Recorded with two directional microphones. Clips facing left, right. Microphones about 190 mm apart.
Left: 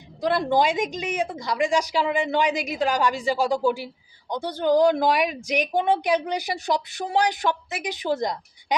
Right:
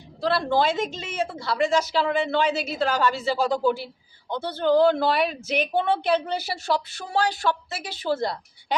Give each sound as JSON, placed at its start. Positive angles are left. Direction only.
{"t": 0.2, "sound": "speech", "side_deg": 15}